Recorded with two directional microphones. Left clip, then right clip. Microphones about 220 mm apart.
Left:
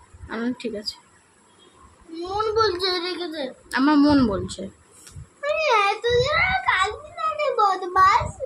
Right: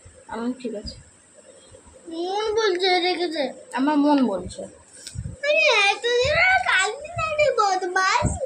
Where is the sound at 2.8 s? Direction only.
20° left (ahead or behind).